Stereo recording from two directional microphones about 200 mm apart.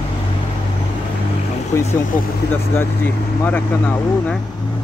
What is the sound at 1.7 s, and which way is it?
Speech, 15° left (ahead or behind).